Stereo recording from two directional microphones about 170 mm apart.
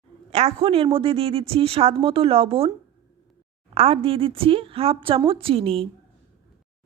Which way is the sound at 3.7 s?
35° right (ahead or behind).